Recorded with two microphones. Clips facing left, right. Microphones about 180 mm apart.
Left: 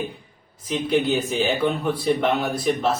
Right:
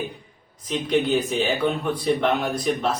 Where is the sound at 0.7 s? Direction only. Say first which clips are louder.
Even; 5° left (ahead or behind).